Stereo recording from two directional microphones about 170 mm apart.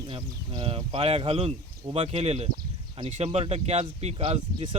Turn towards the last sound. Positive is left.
turn(degrees=-35)  # may be behind; listen again after turning